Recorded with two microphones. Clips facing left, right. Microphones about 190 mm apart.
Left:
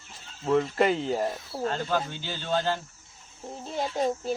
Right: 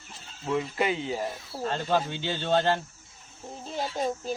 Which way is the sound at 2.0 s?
65° right (ahead or behind).